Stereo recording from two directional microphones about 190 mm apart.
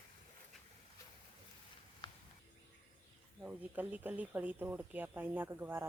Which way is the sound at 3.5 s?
10° right (ahead or behind).